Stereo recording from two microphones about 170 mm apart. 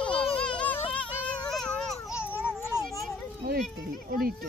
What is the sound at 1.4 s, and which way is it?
Baby cry, 5° left (ahead or behind).